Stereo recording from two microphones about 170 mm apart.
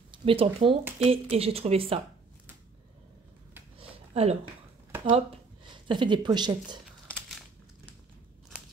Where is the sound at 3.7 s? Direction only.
35° right (ahead or behind).